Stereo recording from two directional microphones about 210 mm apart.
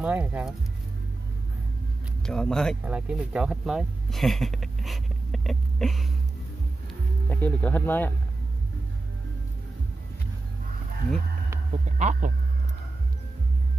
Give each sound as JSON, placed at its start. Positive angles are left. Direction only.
{"t": 0.0, "sound": "speech", "side_deg": -5}
{"t": 2.2, "sound": "speech", "side_deg": 5}
{"t": 7.2, "sound": "speech", "side_deg": 10}
{"t": 12.0, "sound": "speech", "side_deg": -35}